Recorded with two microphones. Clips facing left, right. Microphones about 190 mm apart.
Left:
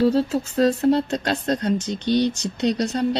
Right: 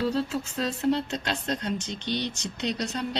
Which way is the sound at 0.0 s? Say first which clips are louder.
Left 8 dB; 40° left (ahead or behind).